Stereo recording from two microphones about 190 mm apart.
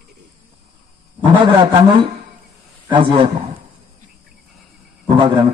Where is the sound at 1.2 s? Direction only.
25° right (ahead or behind).